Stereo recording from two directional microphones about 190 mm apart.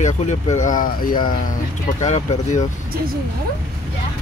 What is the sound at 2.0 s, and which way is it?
Speech, 40° left (ahead or behind).